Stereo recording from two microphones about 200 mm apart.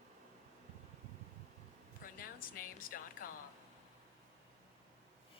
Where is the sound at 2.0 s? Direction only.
45° left (ahead or behind).